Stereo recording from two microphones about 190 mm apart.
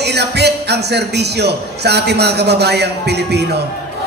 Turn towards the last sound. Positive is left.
turn(degrees=-60)  # may be behind; listen again after turning